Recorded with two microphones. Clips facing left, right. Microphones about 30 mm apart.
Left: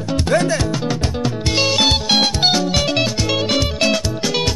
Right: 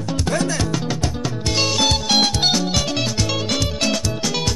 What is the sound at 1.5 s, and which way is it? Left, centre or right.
Music, centre.